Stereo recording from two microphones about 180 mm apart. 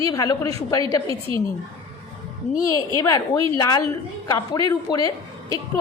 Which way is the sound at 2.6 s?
20° left (ahead or behind).